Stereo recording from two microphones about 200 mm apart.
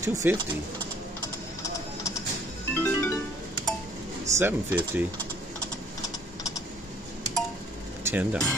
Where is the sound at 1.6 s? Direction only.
15° left (ahead or behind).